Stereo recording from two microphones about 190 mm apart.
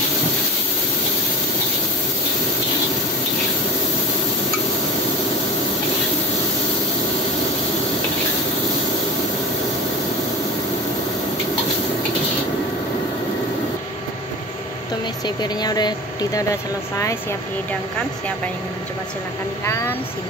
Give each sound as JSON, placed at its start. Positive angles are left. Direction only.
{"t": 15.2, "sound": "speech", "side_deg": 20}
{"t": 19.6, "sound": "speech", "side_deg": 15}